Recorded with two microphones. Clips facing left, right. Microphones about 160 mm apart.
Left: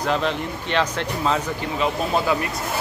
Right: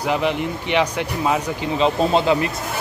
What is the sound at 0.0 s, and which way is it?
Speech, 15° right (ahead or behind).